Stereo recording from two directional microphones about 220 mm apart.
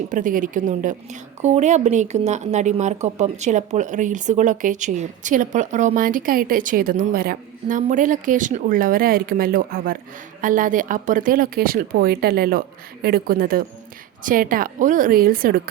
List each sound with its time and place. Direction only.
0.1 s a woman's voice: 35° right (ahead or behind)